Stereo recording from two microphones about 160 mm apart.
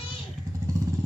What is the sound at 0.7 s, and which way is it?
Motorcycle, 20° right (ahead or behind).